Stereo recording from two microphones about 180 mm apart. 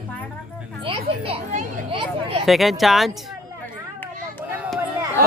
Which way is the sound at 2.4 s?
Centre (ahead or behind).